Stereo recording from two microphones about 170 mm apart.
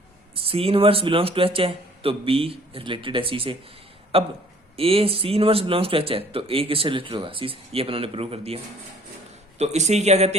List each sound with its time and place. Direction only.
0.3 s speech: 35° right (ahead or behind)